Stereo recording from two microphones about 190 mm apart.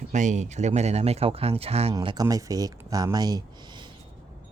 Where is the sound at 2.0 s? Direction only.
20° right (ahead or behind).